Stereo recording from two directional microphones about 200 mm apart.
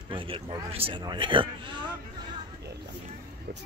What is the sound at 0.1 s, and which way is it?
A man's voice, 25° right (ahead or behind).